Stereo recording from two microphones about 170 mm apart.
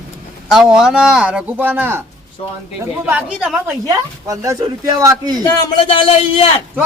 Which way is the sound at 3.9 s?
20° right (ahead or behind).